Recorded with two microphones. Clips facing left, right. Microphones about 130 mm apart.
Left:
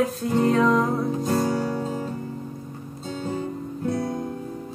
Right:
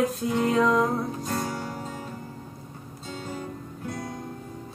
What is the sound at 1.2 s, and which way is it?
Music, 35° left (ahead or behind).